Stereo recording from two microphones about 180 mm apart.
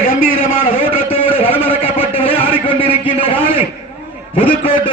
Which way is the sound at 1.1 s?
30° left (ahead or behind).